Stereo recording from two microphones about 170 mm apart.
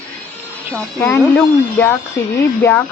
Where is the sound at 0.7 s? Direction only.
10° left (ahead or behind).